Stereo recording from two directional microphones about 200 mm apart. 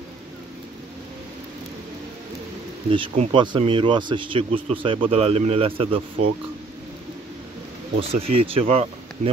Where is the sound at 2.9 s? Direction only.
25° right (ahead or behind).